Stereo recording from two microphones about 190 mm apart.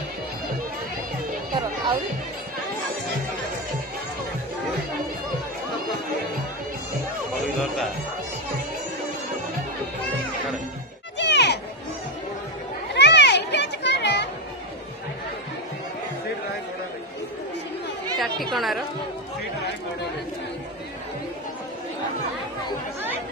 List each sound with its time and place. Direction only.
11.1 s music: 65° left (ahead or behind)
12.9 s children playing: 65° left (ahead or behind)
18.1 s chatter: centre (ahead or behind)